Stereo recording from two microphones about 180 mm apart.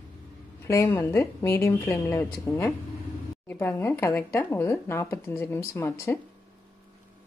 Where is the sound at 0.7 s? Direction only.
15° left (ahead or behind).